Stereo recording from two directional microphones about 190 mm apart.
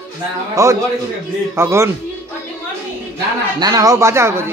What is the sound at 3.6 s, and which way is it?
Speech, 20° right (ahead or behind).